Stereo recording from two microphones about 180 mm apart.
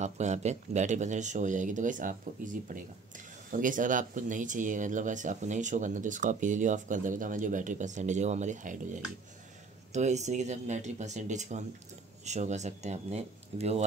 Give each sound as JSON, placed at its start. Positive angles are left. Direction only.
{"t": 0.0, "sound": "speech", "side_deg": -40}